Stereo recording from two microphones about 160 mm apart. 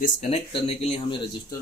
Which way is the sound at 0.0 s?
40° left (ahead or behind).